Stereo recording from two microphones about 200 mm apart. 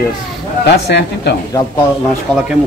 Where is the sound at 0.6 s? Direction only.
60° left (ahead or behind).